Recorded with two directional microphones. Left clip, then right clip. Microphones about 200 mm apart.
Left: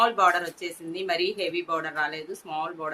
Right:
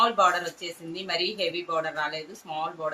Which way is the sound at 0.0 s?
40° left (ahead or behind).